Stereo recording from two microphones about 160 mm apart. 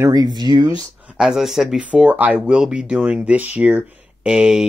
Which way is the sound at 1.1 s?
5° right (ahead or behind).